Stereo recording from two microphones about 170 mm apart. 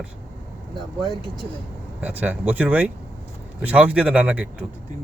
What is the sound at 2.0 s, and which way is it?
A man's voice, 10° right (ahead or behind).